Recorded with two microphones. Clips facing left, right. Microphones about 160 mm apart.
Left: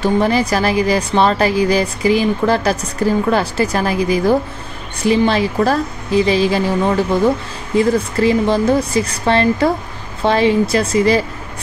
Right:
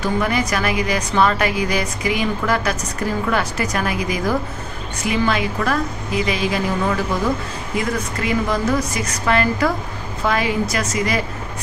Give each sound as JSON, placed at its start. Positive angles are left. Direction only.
{"t": 0.0, "sound": "a woman's voice", "side_deg": 30}